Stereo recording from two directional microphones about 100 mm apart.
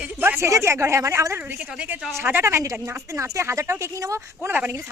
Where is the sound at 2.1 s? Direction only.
25° right (ahead or behind).